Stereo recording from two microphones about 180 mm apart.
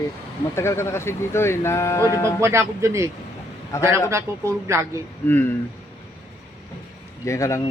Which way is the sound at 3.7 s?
15° left (ahead or behind).